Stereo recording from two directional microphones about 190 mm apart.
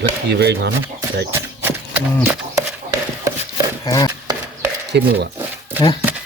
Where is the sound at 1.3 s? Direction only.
10° right (ahead or behind).